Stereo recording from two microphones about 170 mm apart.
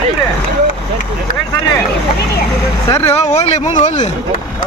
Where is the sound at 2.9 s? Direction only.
15° left (ahead or behind).